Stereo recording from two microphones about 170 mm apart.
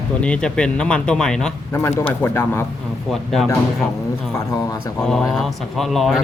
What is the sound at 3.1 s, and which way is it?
Speech, centre (ahead or behind).